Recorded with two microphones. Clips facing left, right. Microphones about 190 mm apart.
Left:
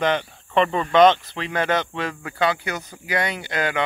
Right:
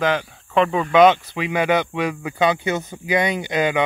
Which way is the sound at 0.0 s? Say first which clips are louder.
Right 1 dB; centre (ahead or behind).